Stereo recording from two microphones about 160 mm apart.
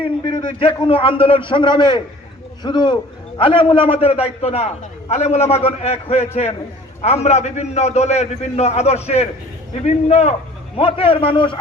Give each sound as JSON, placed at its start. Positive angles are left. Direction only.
{"t": 0.0, "sound": "a man's voice", "side_deg": 30}